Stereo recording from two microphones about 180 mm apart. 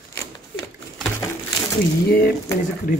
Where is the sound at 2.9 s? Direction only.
50° left (ahead or behind).